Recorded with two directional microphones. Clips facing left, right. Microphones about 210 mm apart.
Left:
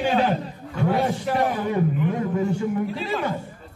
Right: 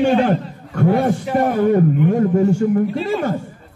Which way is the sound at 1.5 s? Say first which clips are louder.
Right 8 dB; 50° right (ahead or behind).